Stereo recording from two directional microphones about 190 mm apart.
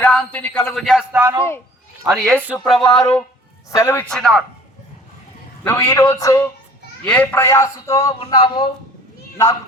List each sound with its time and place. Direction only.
0.0 s a man's voice: 5° left (ahead or behind)
1.2 s a man's voice: 15° right (ahead or behind)
2.1 s a man's voice: centre (ahead or behind)
3.0 s a man's voice: 15° left (ahead or behind)
5.6 s a man's voice: 15° left (ahead or behind)